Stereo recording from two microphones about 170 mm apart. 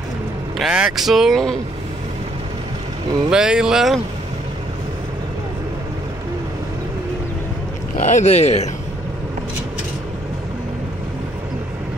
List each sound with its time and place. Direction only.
0.6 s speech: centre (ahead or behind)
3.3 s speech: 5° right (ahead or behind)
8.0 s speech: 45° left (ahead or behind)